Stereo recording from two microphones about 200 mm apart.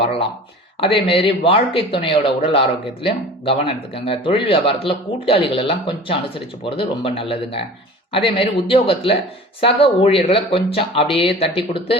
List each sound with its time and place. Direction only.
0.0 s speech: 30° left (ahead or behind)